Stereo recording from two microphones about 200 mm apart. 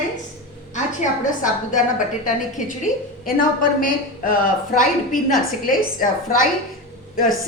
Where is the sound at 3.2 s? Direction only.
45° left (ahead or behind).